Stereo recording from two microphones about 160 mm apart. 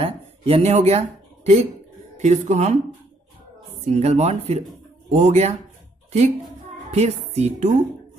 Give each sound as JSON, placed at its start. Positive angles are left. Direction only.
{"t": 0.0, "sound": "a sound", "side_deg": -40}
{"t": 2.1, "sound": "a woman's voice", "side_deg": -45}
{"t": 3.8, "sound": "a woman's voice", "side_deg": -40}
{"t": 6.9, "sound": "a woman's voice", "side_deg": -40}